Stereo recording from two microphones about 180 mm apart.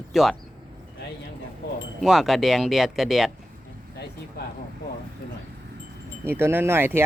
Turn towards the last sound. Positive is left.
turn(degrees=-15)  # may be behind; listen again after turning